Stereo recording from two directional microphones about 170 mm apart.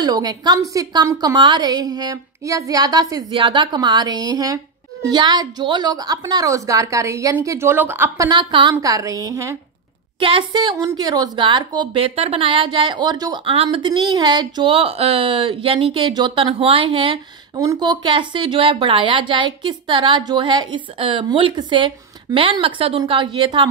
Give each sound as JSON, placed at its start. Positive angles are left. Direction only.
{"t": 0.0, "sound": "speech", "side_deg": -25}
{"t": 8.3, "sound": "speech", "side_deg": -30}
{"t": 10.2, "sound": "speech", "side_deg": -30}